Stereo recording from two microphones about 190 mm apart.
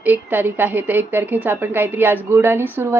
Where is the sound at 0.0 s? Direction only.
10° right (ahead or behind).